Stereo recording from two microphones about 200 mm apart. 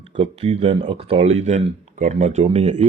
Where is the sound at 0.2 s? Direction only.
30° right (ahead or behind).